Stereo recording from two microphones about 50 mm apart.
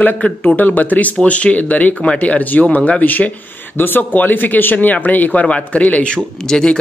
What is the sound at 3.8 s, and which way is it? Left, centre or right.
Speech, left.